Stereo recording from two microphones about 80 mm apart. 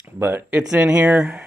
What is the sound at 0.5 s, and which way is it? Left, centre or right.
Speech, centre.